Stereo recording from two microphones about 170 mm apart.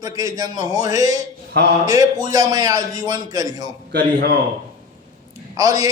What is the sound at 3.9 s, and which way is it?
Speech, 80° right.